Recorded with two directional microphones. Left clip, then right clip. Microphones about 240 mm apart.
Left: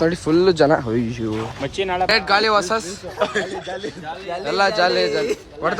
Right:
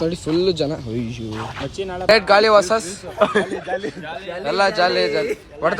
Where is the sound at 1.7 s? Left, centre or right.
Left.